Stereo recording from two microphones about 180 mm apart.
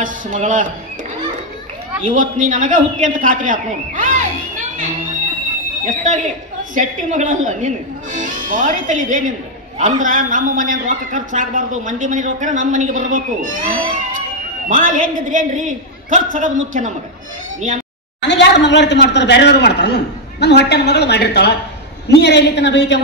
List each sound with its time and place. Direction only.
0.0 s a man's voice: 45° right (ahead or behind)
2.1 s a man's voice: 45° right (ahead or behind)
5.9 s a man's voice: 45° right (ahead or behind)
18.2 s a man's voice: 75° left (ahead or behind)